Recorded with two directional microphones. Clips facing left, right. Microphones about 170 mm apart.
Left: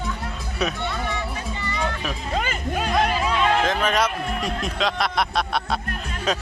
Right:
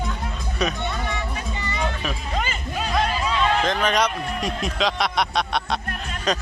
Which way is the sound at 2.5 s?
50° left (ahead or behind).